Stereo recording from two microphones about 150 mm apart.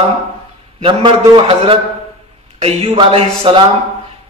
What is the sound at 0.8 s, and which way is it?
A man's voice, 35° right (ahead or behind).